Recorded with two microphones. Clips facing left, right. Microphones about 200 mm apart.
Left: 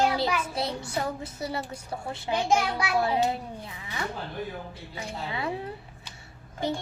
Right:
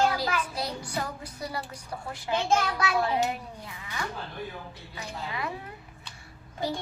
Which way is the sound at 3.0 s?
25° left (ahead or behind).